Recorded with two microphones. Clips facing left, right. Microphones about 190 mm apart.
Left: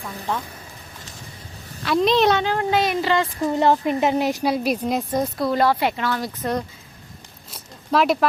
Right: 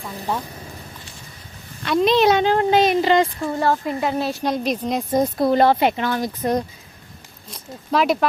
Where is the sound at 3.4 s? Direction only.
20° left (ahead or behind).